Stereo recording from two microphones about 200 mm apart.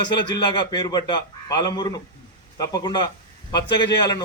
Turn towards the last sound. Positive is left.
turn(degrees=20)  # may be behind; listen again after turning